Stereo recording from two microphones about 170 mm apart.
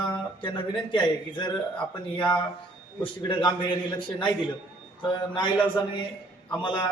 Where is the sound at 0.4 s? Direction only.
30° left (ahead or behind).